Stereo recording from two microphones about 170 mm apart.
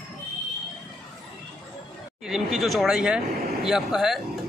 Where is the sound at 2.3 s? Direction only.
Centre (ahead or behind).